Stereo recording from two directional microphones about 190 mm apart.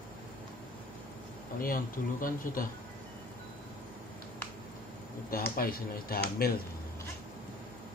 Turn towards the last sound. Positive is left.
turn(degrees=50)  # may be behind; listen again after turning